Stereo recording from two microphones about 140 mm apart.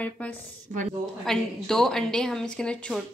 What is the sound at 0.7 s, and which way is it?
Speech, 60° right (ahead or behind).